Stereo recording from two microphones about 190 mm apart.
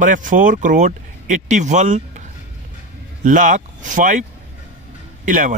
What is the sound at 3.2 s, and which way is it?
Speech, 40° right (ahead or behind).